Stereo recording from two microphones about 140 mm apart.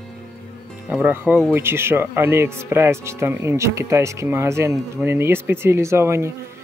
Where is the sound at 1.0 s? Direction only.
15° right (ahead or behind).